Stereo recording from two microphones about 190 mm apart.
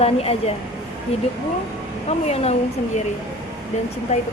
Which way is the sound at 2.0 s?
35° left (ahead or behind).